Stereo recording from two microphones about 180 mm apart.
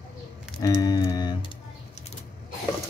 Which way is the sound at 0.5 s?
20° left (ahead or behind).